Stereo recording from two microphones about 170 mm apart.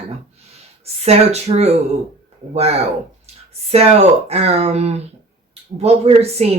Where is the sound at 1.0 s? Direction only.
40° right (ahead or behind).